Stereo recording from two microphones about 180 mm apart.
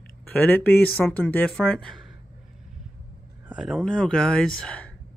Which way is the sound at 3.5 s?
5° right (ahead or behind).